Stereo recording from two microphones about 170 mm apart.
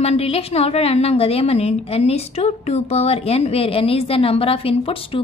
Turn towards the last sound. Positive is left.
turn(degrees=35)  # may be behind; listen again after turning